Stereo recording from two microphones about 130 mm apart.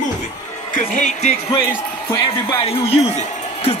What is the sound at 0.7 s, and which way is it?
Speech, 75° left (ahead or behind).